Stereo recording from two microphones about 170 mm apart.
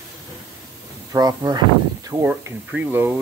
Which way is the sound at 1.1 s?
20° right (ahead or behind).